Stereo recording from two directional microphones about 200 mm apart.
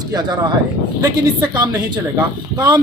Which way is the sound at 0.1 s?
20° right (ahead or behind).